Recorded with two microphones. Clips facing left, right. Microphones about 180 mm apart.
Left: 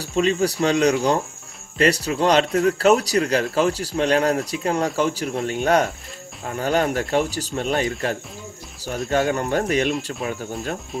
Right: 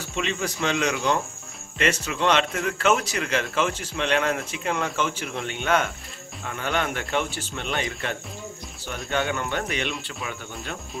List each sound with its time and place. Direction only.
0.0 s a man's voice: 40° left (ahead or behind)